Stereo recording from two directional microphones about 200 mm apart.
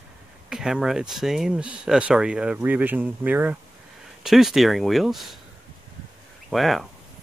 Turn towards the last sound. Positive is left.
turn(degrees=0)  # may be behind; listen again after turning